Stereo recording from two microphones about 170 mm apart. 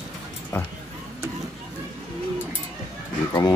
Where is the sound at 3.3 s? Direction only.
25° left (ahead or behind).